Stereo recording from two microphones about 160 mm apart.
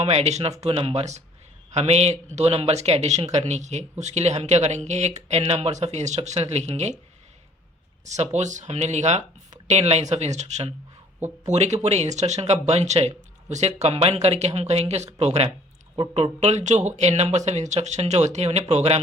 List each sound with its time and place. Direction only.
0.0 s speech: 40° right (ahead or behind)
8.0 s speech: 45° right (ahead or behind)